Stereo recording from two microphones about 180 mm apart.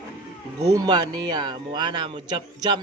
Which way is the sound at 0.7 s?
20° right (ahead or behind).